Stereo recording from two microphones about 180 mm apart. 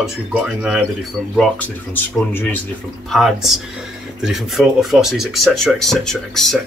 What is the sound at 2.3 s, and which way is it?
Speech, 10° left (ahead or behind).